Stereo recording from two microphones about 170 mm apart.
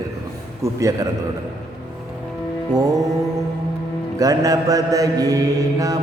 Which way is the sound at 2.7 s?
20° right (ahead or behind).